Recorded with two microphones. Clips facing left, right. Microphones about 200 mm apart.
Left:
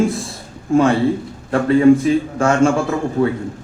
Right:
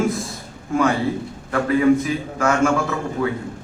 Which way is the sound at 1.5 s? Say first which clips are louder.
Left 5 dB; 30° left (ahead or behind).